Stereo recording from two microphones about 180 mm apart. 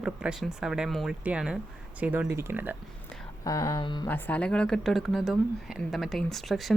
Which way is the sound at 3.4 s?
20° left (ahead or behind).